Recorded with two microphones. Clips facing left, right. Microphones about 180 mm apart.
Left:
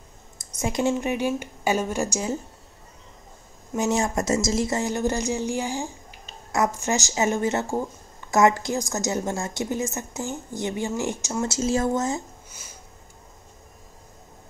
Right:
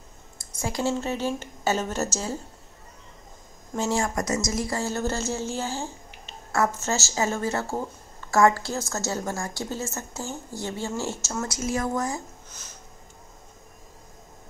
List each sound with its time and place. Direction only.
0.4 s speech: 20° left (ahead or behind)
3.7 s speech: 20° left (ahead or behind)
12.4 s a sound: 10° left (ahead or behind)